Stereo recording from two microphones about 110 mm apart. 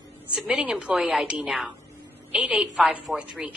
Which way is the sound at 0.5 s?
10° right (ahead or behind).